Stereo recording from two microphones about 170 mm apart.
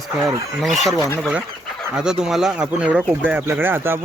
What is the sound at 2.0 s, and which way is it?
Speech, 5° right (ahead or behind).